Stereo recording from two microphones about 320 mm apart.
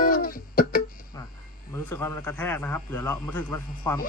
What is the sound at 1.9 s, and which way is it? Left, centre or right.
Speech, centre.